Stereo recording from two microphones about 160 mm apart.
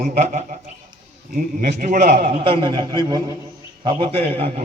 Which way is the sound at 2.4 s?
30° right (ahead or behind).